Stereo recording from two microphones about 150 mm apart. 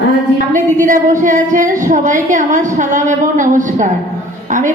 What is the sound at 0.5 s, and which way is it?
A woman's voice, 60° right (ahead or behind).